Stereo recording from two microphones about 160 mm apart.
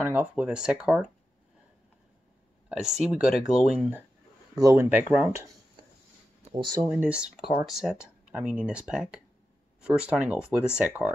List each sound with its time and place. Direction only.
0.0 s speech: 10° right (ahead or behind)
2.7 s speech: 5° right (ahead or behind)
4.6 s speech: 20° right (ahead or behind)
6.5 s speech: 25° right (ahead or behind)
6.9 s speech: 5° right (ahead or behind)